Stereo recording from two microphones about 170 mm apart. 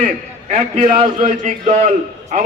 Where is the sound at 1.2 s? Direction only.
45° right (ahead or behind).